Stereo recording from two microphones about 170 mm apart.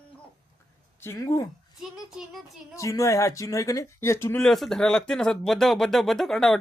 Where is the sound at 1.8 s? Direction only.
5° right (ahead or behind).